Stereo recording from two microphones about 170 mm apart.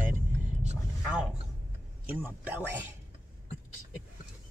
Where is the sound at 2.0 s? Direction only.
10° right (ahead or behind).